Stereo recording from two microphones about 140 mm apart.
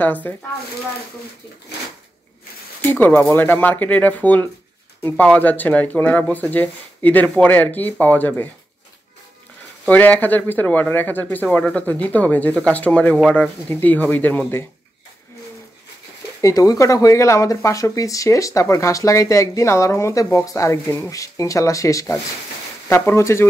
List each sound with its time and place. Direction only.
0.0 s speech: 10° left (ahead or behind)
2.9 s speech: 15° left (ahead or behind)
9.8 s speech: 10° left (ahead or behind)
16.3 s speech: 25° left (ahead or behind)